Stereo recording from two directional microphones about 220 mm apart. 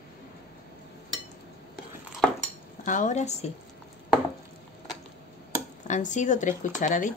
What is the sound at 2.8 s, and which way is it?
Speech, 35° left (ahead or behind).